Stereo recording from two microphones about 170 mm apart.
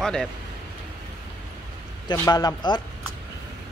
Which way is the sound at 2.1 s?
25° left (ahead or behind).